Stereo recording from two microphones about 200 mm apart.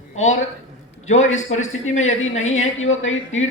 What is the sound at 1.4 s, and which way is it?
A man's voice, 35° left (ahead or behind).